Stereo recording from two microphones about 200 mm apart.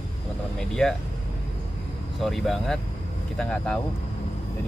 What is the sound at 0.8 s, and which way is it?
Speech, 5° left (ahead or behind).